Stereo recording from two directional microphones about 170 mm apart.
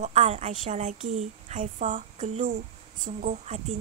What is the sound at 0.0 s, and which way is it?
A woman's voice, 40° right (ahead or behind).